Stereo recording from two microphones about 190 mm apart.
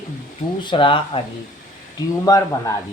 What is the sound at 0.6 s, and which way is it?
Speech, 25° left (ahead or behind).